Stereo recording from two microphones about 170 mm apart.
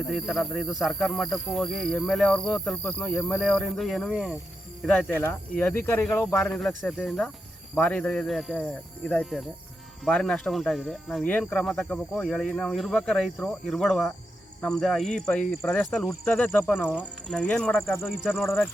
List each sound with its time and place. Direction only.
0.1 s speech: centre (ahead or behind); by 6.5 s 20° left (ahead or behind)
6.5 s speech: 5° left (ahead or behind)